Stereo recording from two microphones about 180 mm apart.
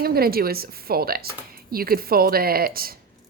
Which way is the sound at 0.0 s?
55° right (ahead or behind).